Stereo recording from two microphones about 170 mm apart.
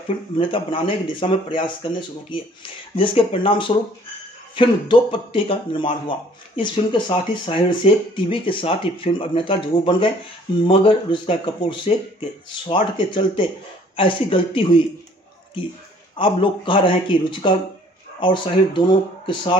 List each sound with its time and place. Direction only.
0.4 s speech: 30° left (ahead or behind)
12.9 s speech: 30° left (ahead or behind)
16.2 s speech: 30° left (ahead or behind)